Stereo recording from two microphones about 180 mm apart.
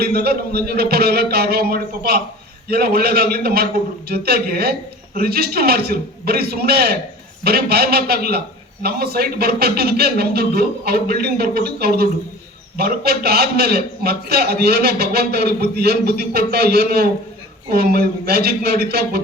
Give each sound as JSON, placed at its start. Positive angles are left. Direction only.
{"t": 0.0, "sound": "a man's voice", "side_deg": -60}